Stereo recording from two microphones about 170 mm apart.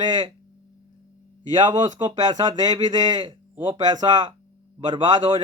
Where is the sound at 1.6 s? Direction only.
30° right (ahead or behind).